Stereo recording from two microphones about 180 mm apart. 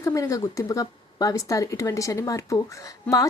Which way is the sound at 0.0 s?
15° left (ahead or behind).